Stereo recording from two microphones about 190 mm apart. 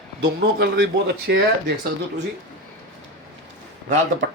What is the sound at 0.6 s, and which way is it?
Speech, 60° right (ahead or behind).